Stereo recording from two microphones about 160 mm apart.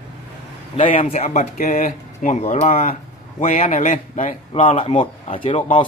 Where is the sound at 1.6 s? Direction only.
60° left (ahead or behind).